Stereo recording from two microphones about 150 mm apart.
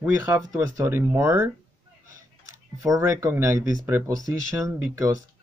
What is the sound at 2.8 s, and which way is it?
Speech, 20° right (ahead or behind).